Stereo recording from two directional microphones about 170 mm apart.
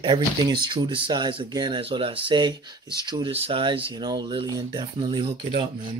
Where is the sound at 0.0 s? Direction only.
25° right (ahead or behind).